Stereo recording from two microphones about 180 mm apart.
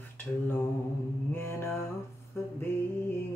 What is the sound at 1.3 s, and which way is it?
Speech, 15° left (ahead or behind).